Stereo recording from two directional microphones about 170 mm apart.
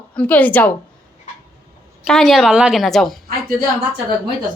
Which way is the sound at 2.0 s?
5° left (ahead or behind).